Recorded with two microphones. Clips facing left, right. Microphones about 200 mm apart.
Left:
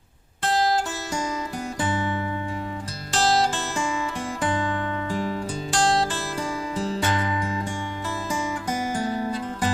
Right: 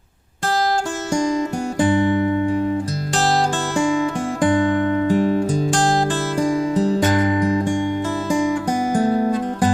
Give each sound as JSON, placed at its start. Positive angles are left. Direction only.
{"t": 3.2, "sound": "music", "side_deg": -45}
{"t": 4.9, "sound": "music", "side_deg": -35}
{"t": 9.1, "sound": "music", "side_deg": -40}